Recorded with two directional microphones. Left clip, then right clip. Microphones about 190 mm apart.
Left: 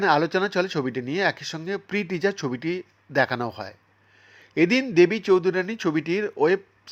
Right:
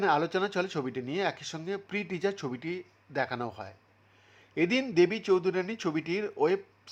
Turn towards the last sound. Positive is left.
turn(degrees=10)  # may be behind; listen again after turning